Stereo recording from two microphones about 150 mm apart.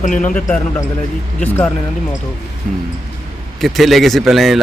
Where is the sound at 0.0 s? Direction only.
60° left (ahead or behind).